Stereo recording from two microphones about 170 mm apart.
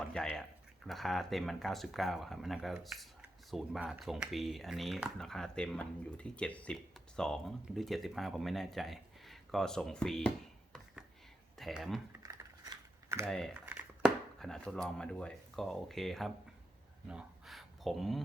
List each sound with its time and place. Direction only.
0.0 s speech: 5° left (ahead or behind)
12.2 s typing: 20° right (ahead or behind)
13.2 s speech: 5° left (ahead or behind)
17.1 s gasp: 5° right (ahead or behind)